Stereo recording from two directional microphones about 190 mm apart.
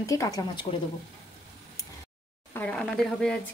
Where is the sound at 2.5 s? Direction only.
5° left (ahead or behind).